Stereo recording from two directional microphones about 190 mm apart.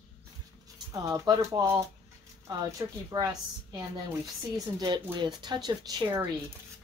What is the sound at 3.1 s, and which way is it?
A woman's voice, 20° right (ahead or behind).